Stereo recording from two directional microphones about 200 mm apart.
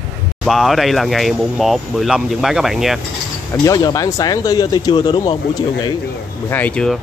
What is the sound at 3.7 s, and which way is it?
Speech, 20° left (ahead or behind).